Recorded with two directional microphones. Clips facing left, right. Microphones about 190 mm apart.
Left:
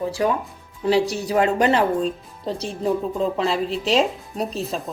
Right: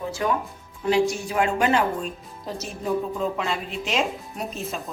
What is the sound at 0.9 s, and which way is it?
A woman's voice, 35° left (ahead or behind).